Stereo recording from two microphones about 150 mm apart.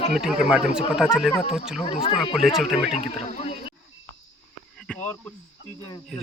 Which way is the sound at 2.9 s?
45° left (ahead or behind).